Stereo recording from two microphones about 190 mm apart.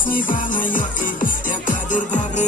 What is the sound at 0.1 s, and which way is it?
Music, 45° left (ahead or behind).